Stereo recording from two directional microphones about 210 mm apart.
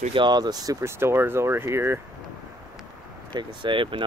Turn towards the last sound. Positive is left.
turn(degrees=-25)  # may be behind; listen again after turning